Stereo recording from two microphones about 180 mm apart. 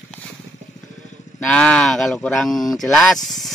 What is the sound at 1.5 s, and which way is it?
Speech, 5° left (ahead or behind).